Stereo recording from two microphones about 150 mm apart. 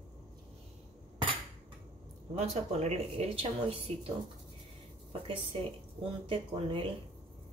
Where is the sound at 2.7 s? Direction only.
45° right (ahead or behind).